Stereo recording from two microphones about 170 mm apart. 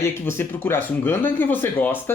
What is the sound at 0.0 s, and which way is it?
Speech, 15° left (ahead or behind).